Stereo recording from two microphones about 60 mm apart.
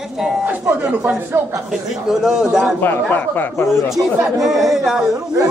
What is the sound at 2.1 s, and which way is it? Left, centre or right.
Speech, centre.